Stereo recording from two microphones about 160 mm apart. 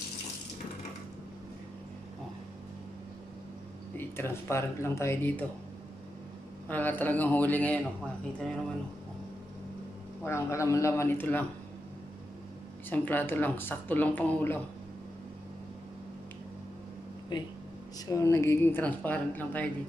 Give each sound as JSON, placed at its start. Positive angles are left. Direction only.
{"t": 3.9, "sound": "speech", "side_deg": 15}
{"t": 6.7, "sound": "speech", "side_deg": 10}
{"t": 10.2, "sound": "speech", "side_deg": 15}
{"t": 12.9, "sound": "speech", "side_deg": 10}
{"t": 18.1, "sound": "speech", "side_deg": 20}